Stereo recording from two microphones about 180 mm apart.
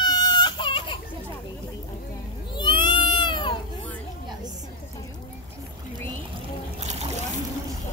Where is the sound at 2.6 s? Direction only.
25° left (ahead or behind).